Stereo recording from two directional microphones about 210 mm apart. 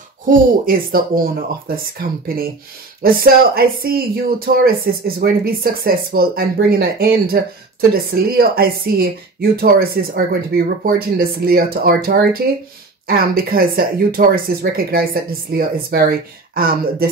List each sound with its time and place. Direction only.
0.3 s speech: 45° right (ahead or behind)